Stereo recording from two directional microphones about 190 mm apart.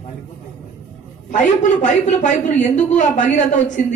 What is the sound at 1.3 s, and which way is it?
A man's voice, 40° left (ahead or behind).